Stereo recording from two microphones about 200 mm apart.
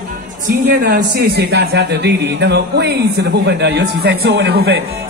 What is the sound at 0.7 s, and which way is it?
A man's voice, 55° right (ahead or behind).